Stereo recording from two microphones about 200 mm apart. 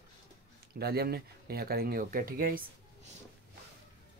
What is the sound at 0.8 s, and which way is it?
Speech, 50° right (ahead or behind).